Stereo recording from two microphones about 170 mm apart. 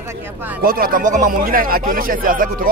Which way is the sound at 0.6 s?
60° right (ahead or behind).